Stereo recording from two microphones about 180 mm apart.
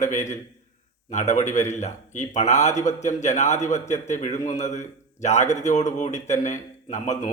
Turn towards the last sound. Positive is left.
turn(degrees=40)  # may be behind; listen again after turning